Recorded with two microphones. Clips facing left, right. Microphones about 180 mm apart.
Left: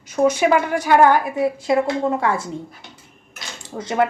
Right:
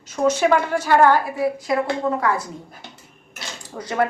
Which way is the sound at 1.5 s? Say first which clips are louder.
Left 3 dB; 25° left (ahead or behind).